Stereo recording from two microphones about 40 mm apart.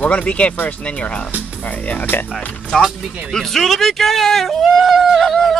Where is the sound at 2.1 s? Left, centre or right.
Left.